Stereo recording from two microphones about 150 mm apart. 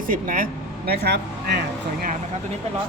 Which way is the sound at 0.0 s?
65° right (ahead or behind).